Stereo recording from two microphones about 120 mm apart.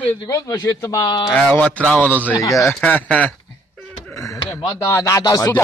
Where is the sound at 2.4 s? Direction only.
25° left (ahead or behind).